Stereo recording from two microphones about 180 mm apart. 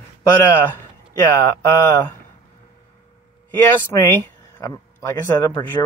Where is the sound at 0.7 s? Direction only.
20° left (ahead or behind).